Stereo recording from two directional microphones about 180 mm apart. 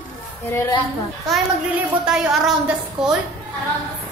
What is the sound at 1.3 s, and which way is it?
A woman's voice, 5° right (ahead or behind).